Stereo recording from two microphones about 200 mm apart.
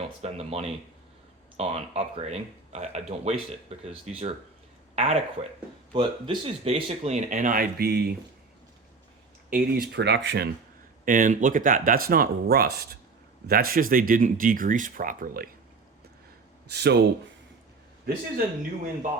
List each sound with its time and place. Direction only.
0.2 s speech: 30° right (ahead or behind); by 8.1 s 55° right (ahead or behind)
9.5 s speech: 50° right (ahead or behind)
11.0 s speech: 40° right (ahead or behind)
16.7 s speech: 55° right (ahead or behind)